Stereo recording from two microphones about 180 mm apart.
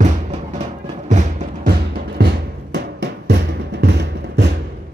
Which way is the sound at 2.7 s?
70° right (ahead or behind).